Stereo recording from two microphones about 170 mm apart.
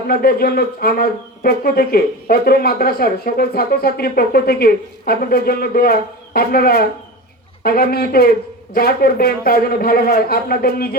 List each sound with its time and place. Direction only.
0.1 s a man's voice: 65° left (ahead or behind)